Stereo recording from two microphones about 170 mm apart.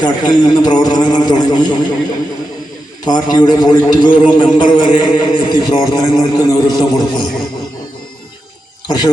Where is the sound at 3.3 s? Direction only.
25° left (ahead or behind).